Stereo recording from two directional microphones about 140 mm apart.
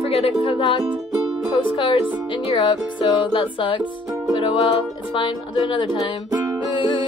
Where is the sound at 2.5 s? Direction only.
35° left (ahead or behind).